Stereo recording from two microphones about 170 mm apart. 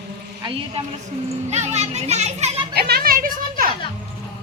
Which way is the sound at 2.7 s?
65° right (ahead or behind).